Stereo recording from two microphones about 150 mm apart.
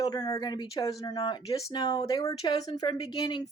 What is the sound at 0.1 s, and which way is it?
Speech, 25° left (ahead or behind).